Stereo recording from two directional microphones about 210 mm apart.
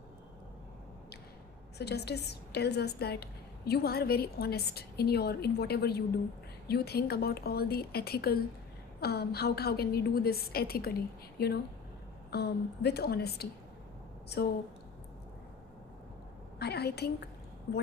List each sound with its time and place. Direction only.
1.8 s a woman's voice: 50° left (ahead or behind)
16.6 s a woman's voice: 50° left (ahead or behind)